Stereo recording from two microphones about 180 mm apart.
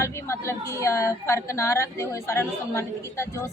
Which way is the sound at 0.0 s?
15° left (ahead or behind).